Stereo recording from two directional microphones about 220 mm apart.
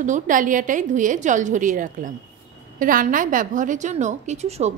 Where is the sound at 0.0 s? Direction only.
35° right (ahead or behind).